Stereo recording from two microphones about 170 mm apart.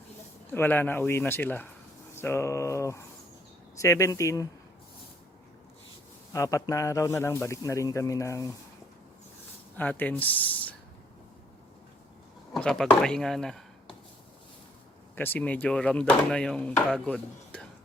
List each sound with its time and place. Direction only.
0.5 s speech: 10° left (ahead or behind)
6.3 s speech: 20° left (ahead or behind)
9.7 s speech: 10° left (ahead or behind)
12.5 s speech: 5° left (ahead or behind)
15.1 s speech: 10° left (ahead or behind)